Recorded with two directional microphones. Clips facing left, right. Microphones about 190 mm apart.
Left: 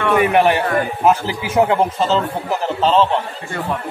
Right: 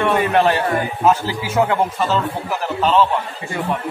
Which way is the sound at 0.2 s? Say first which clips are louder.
Left 2 dB; 15° left (ahead or behind).